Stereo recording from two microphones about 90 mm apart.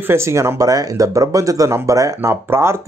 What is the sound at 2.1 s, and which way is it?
Speech, 25° right (ahead or behind).